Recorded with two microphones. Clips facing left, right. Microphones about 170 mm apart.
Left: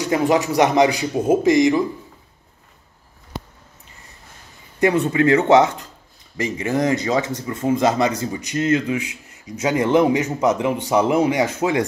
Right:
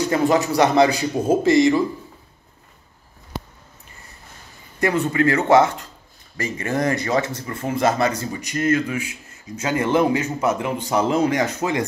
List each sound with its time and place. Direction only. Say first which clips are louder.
0.0 s a man's voice: even; 15° left (ahead or behind)
4.7 s a man's voice: left 2 dB; 15° left (ahead or behind)